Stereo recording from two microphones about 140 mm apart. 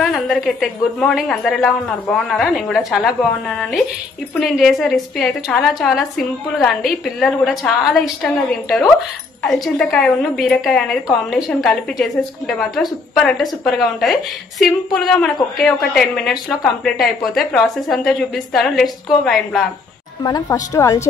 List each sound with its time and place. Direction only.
0.0 s a woman's voice: centre (ahead or behind)
9.4 s a woman's voice: 5° left (ahead or behind)
20.2 s a woman's voice: 25° left (ahead or behind)